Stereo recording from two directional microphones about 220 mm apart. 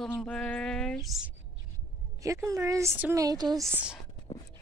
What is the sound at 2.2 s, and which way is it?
A woman's voice, 15° right (ahead or behind).